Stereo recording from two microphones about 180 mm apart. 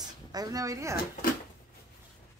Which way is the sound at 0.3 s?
20° right (ahead or behind).